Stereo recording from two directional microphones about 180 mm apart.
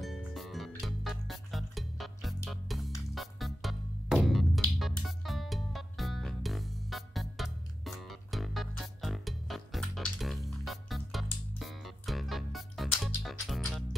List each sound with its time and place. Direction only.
0.0 s music: centre (ahead or behind)